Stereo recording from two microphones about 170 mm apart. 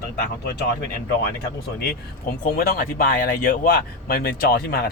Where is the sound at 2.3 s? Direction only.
55° left (ahead or behind).